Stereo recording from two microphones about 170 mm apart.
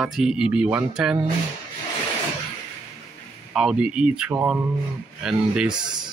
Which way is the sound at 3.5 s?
5° right (ahead or behind).